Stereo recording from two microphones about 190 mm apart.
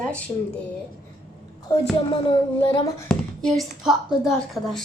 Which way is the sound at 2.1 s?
30° left (ahead or behind).